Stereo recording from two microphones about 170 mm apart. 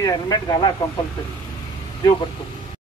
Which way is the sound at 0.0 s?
20° left (ahead or behind).